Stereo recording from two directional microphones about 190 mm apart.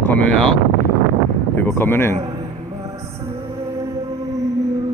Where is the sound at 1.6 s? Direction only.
10° left (ahead or behind).